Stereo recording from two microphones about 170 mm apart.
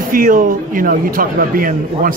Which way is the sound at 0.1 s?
55° right (ahead or behind).